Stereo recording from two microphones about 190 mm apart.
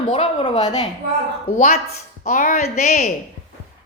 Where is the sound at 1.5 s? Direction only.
40° left (ahead or behind).